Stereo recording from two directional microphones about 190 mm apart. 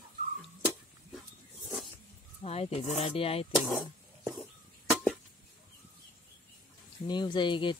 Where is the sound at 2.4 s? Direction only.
35° left (ahead or behind).